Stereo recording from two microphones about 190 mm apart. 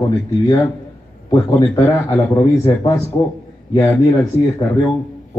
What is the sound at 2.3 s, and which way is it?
Speech, 15° left (ahead or behind).